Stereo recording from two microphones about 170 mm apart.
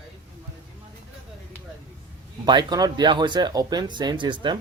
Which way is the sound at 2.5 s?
25° right (ahead or behind).